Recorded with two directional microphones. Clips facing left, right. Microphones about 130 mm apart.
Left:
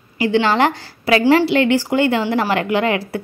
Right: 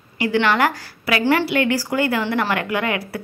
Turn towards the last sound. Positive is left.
turn(degrees=25)  # may be behind; listen again after turning